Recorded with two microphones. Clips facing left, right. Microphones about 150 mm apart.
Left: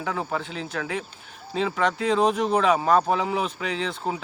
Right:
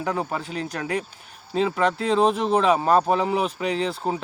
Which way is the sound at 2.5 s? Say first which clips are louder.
Right 1 dB; 30° right (ahead or behind).